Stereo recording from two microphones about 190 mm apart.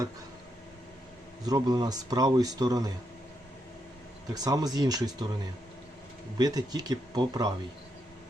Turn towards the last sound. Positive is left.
turn(degrees=-20)  # may be behind; listen again after turning